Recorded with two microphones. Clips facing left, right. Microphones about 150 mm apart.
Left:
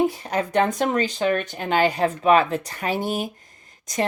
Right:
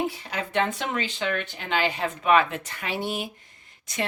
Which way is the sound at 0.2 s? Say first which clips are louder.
Left 5 dB; 45° left (ahead or behind).